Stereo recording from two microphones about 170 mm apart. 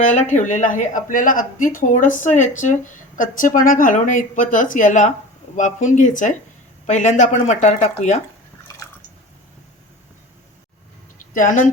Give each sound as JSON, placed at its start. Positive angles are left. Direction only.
{"t": 0.0, "sound": "speech", "side_deg": 45}
{"t": 11.2, "sound": "a woman's voice", "side_deg": 50}